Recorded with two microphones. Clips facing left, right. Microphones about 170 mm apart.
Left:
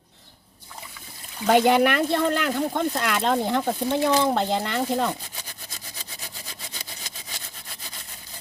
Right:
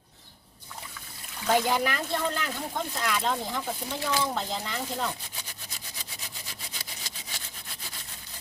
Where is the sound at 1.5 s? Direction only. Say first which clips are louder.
Left 7 dB; 70° left (ahead or behind).